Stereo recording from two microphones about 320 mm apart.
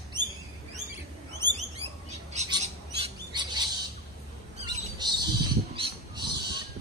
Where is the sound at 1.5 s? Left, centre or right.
Right.